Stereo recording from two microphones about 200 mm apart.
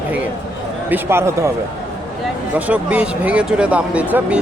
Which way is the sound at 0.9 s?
10° right (ahead or behind).